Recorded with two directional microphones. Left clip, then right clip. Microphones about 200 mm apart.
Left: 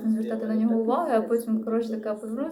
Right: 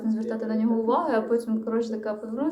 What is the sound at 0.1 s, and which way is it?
A woman's voice, 20° left (ahead or behind).